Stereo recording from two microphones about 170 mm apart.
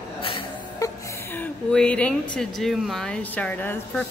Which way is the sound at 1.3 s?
5° left (ahead or behind).